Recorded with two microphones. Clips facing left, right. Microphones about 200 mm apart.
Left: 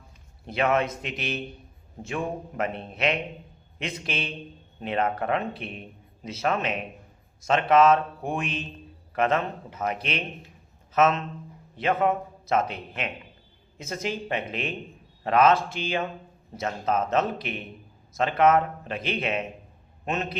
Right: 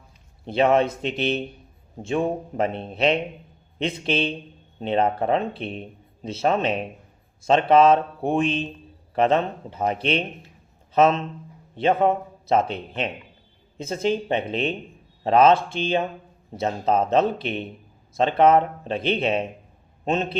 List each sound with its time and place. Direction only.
0.4 s a man's voice: 30° right (ahead or behind)